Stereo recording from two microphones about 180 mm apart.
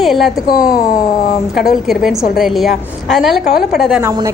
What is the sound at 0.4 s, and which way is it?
Speech, 55° left (ahead or behind).